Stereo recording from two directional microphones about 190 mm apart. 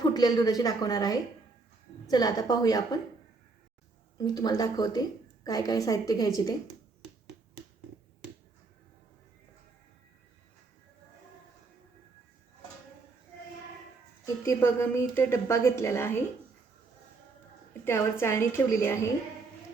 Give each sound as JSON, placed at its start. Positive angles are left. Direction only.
{"t": 0.0, "sound": "a woman's voice", "side_deg": 20}
{"t": 4.2, "sound": "a woman's voice", "side_deg": 20}
{"t": 14.4, "sound": "a woman's voice", "side_deg": 15}
{"t": 17.8, "sound": "a woman's voice", "side_deg": 15}